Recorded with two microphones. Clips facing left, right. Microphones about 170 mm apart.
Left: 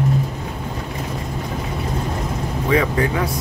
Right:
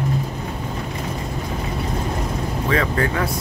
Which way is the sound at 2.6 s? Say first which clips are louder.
Left 3 dB; 15° left (ahead or behind).